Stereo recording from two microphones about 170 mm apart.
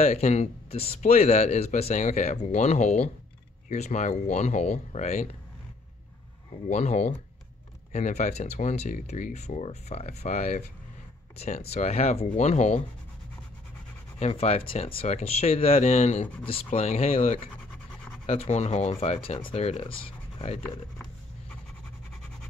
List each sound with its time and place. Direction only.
0.0 s speech: 40° left (ahead or behind)
6.7 s speech: 40° left (ahead or behind)
14.2 s speech: 35° left (ahead or behind)